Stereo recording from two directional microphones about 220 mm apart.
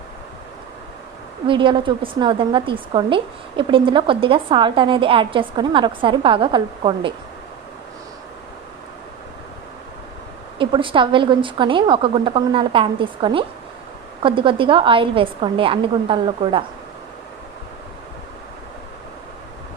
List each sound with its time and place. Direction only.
1.5 s a woman's voice: 20° right (ahead or behind)
10.6 s a woman's voice: 20° right (ahead or behind)